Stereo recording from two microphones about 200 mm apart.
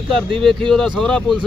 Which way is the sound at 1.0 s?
5° left (ahead or behind).